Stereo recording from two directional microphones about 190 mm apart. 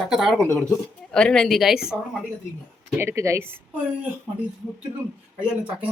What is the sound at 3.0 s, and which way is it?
Speech, 15° right (ahead or behind).